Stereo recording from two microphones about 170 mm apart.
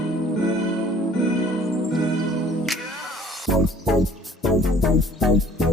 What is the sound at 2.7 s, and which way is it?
Music, centre (ahead or behind).